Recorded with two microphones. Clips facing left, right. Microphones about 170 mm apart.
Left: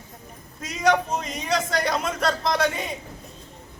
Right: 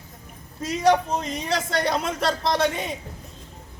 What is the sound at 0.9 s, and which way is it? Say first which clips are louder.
A man's voice: right 1 dB; 30° right (ahead or behind).